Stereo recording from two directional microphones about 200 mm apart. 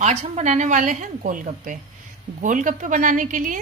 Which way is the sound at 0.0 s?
35° right (ahead or behind).